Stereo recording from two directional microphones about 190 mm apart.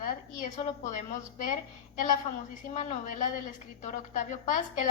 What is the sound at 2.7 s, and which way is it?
A woman's voice, 40° left (ahead or behind).